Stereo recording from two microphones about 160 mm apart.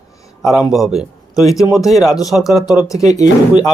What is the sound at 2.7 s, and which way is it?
Speech, 20° left (ahead or behind).